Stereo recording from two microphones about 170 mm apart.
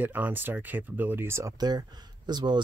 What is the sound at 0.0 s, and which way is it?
Speech, 10° right (ahead or behind).